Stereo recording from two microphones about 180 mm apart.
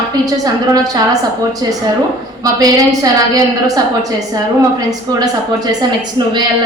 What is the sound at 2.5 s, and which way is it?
A woman's voice, 20° right (ahead or behind).